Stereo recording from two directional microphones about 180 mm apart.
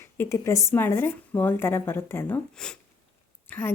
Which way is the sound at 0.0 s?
15° left (ahead or behind).